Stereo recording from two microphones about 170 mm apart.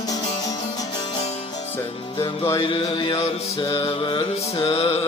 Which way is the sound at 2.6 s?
30° left (ahead or behind).